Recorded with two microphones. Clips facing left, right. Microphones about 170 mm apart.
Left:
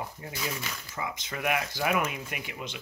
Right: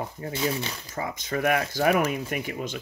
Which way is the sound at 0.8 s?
40° right (ahead or behind).